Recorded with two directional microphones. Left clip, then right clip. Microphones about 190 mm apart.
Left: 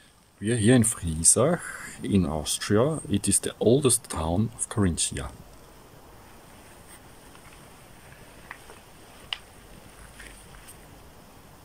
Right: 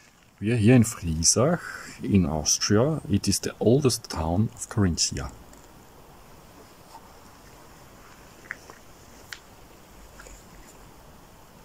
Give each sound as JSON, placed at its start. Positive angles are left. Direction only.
{"t": 0.4, "sound": "speech", "side_deg": -5}